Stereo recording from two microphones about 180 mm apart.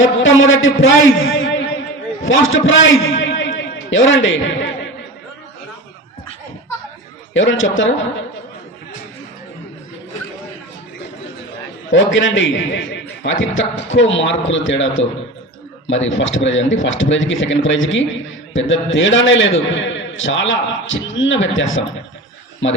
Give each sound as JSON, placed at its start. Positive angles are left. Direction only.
{"t": 0.0, "sound": "a man's voice", "side_deg": 90}
{"t": 7.3, "sound": "a man's voice", "side_deg": 90}
{"t": 11.9, "sound": "a man's voice", "side_deg": 90}